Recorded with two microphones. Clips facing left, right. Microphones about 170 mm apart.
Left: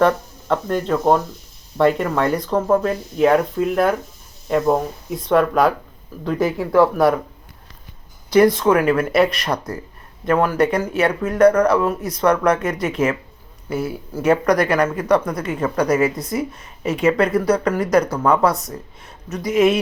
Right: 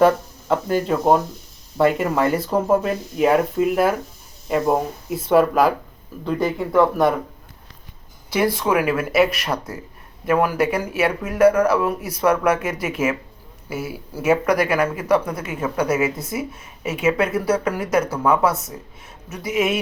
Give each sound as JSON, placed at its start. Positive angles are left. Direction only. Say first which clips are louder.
{"t": 0.0, "sound": "speech", "louder": "right 1 dB", "side_deg": -5}
{"t": 8.3, "sound": "speech", "louder": "left 6 dB", "side_deg": -5}